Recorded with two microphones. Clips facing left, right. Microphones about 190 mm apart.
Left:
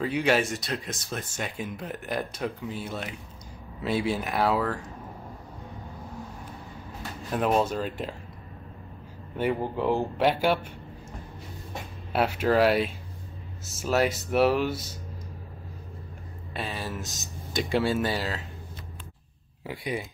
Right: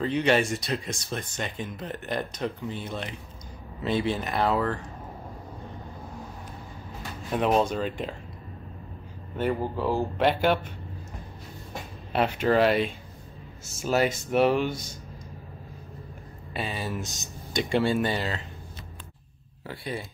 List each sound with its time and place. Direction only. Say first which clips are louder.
0.0 s speech: right 1 dB; 5° left (ahead or behind)
7.2 s speech: right 1 dB; centre (ahead or behind)
9.6 s speech: left 1 dB; 20° left (ahead or behind)
10.1 s speech: right 1 dB; 10° left (ahead or behind)
12.1 s speech: even; 5° left (ahead or behind)
16.5 s speech: right 2 dB; centre (ahead or behind)
19.6 s speech: left 2 dB; 15° left (ahead or behind)